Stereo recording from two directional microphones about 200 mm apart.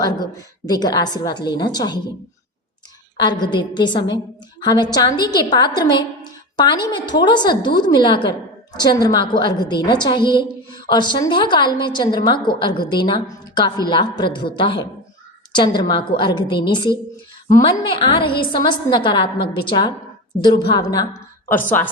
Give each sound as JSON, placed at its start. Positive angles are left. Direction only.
{"t": 0.0, "sound": "a woman's voice", "side_deg": 20}
{"t": 3.4, "sound": "a woman's voice", "side_deg": 20}